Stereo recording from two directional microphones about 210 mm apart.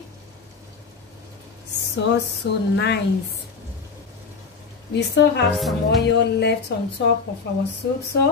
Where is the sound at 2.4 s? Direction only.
55° left (ahead or behind).